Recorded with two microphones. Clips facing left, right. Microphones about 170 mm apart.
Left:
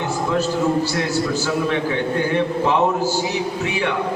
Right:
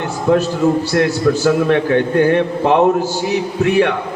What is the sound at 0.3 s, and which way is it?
A man's voice, 60° right (ahead or behind).